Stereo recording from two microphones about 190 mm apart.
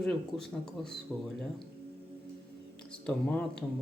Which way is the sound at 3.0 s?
5° left (ahead or behind).